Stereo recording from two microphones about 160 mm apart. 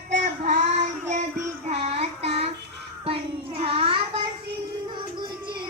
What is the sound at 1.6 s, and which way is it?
Child singing, 40° right (ahead or behind).